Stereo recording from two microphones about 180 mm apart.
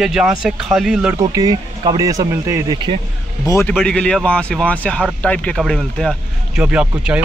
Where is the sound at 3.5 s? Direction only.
15° left (ahead or behind).